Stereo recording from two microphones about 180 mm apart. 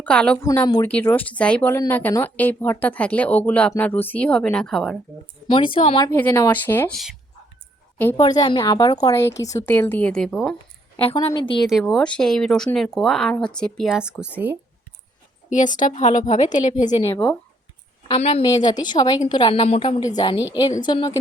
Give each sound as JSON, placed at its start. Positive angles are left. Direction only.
{"t": 0.0, "sound": "a woman's voice", "side_deg": 5}
{"t": 5.5, "sound": "a woman's voice", "side_deg": 30}
{"t": 6.1, "sound": "speech", "side_deg": 10}
{"t": 8.1, "sound": "a woman's voice", "side_deg": 25}
{"t": 11.0, "sound": "a woman's voice", "side_deg": 30}
{"t": 11.6, "sound": "speech", "side_deg": 0}
{"t": 15.4, "sound": "a woman's voice", "side_deg": 45}
{"t": 17.1, "sound": "speech", "side_deg": 5}
{"t": 18.1, "sound": "a woman's voice", "side_deg": 35}
{"t": 18.4, "sound": "a woman's voice", "side_deg": 20}